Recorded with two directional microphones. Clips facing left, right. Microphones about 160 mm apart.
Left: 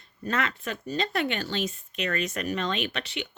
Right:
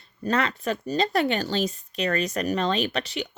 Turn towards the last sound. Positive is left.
turn(degrees=-40)  # may be behind; listen again after turning